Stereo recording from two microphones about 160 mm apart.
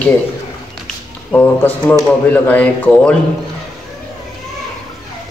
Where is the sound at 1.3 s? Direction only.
10° left (ahead or behind).